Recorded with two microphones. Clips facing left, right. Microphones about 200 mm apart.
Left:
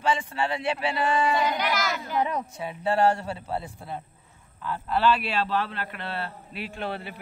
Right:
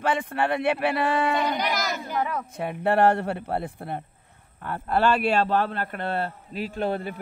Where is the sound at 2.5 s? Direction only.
60° right (ahead or behind).